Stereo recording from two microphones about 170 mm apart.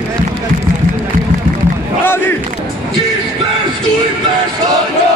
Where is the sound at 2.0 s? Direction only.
15° left (ahead or behind).